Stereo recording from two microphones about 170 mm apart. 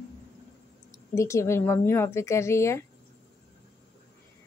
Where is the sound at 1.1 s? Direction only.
15° left (ahead or behind).